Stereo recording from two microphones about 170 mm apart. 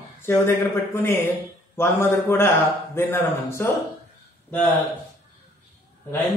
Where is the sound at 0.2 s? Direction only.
10° left (ahead or behind).